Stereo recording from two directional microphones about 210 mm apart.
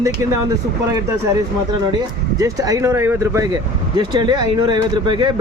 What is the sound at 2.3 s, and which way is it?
Speech, 15° right (ahead or behind).